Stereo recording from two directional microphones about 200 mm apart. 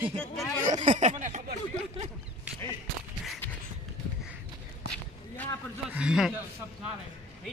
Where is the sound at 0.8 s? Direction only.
35° right (ahead or behind).